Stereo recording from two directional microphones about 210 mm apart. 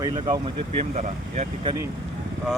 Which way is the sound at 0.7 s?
30° right (ahead or behind).